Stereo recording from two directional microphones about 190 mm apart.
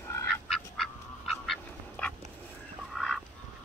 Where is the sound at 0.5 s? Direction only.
Centre (ahead or behind).